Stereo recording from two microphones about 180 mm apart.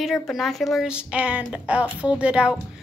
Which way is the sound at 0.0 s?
Centre (ahead or behind).